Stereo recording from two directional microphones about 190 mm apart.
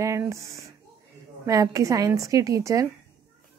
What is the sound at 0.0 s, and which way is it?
Speech, 15° right (ahead or behind).